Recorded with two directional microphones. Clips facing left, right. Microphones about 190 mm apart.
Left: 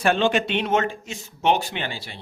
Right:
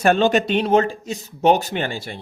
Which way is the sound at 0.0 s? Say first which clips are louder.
Right 4 dB; 45° right (ahead or behind).